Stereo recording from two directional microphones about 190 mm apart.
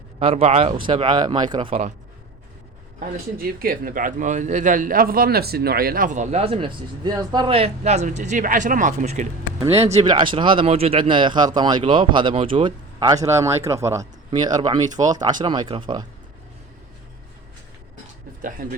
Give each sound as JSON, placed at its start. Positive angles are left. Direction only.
{"t": 0.2, "sound": "speech", "side_deg": -30}
{"t": 3.3, "sound": "a man's voice", "side_deg": -50}
{"t": 18.6, "sound": "speech", "side_deg": -50}